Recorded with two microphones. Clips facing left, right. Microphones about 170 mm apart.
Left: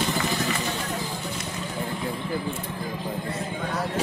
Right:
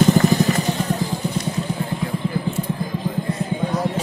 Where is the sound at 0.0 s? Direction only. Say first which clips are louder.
Right 11 dB; 45° right (ahead or behind).